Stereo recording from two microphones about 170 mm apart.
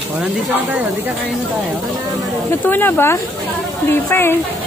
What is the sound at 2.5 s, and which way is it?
A woman's voice, 10° left (ahead or behind).